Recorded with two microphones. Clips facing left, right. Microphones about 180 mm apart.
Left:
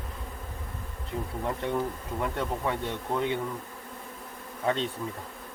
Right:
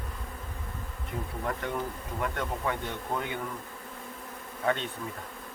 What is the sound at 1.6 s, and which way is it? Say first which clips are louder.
Speech: left 4 dB; 25° left (ahead or behind).